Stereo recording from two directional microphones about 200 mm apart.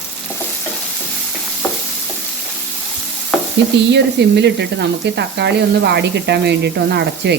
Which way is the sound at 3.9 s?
60° right (ahead or behind).